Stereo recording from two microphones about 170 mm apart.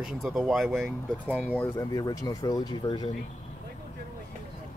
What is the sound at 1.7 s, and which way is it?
Speech, 20° left (ahead or behind).